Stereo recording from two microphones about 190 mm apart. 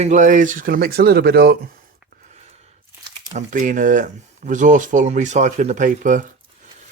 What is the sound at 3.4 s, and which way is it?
Speech, 40° right (ahead or behind).